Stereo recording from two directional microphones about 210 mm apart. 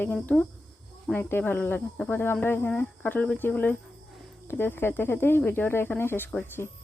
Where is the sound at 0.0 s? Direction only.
5° left (ahead or behind).